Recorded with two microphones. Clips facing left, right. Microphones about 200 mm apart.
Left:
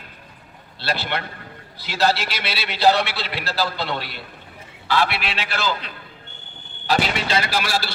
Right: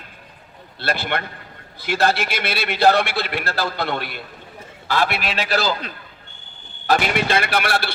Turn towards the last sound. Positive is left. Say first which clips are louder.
# right 2 dB
turn(degrees=-60)  # may be behind; listen again after turning